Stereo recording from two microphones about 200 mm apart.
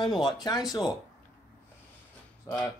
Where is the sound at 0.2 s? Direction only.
20° left (ahead or behind).